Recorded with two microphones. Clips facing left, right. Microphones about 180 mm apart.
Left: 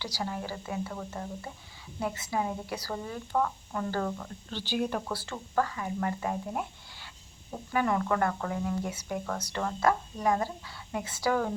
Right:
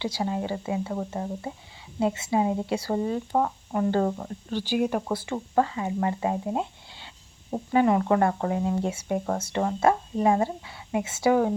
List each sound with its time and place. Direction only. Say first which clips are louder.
0.0 s speech: right 7 dB; 20° right (ahead or behind)
4.4 s speech: right 6 dB; 10° right (ahead or behind)